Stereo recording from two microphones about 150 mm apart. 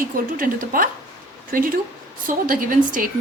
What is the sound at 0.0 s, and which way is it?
A woman's voice, 65° right (ahead or behind).